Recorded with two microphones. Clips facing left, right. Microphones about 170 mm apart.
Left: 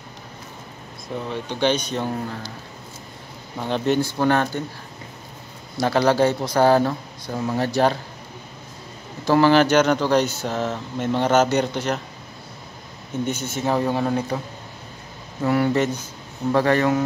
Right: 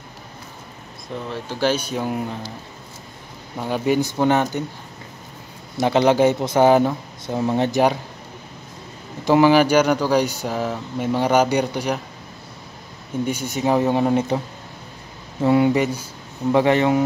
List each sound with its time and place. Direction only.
1.0 s speech: centre (ahead or behind)
3.5 s speech: 10° right (ahead or behind)
5.8 s speech: 20° right (ahead or behind)
9.2 s speech: 15° right (ahead or behind)
13.2 s speech: 10° right (ahead or behind)
15.4 s speech: 20° right (ahead or behind)